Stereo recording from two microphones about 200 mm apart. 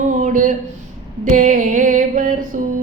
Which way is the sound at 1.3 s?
40° right (ahead or behind).